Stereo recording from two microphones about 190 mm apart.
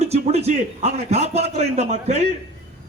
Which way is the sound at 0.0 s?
35° right (ahead or behind).